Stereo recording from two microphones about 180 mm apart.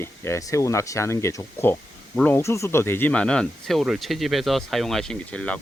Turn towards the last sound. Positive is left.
turn(degrees=5)  # may be behind; listen again after turning